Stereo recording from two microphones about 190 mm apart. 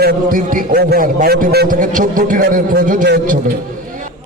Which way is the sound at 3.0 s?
55° right (ahead or behind).